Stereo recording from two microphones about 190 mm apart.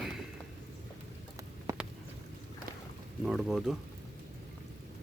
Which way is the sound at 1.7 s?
20° right (ahead or behind).